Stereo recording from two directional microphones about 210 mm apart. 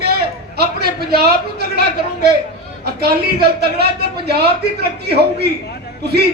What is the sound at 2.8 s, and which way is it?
A man's voice, 50° right (ahead or behind).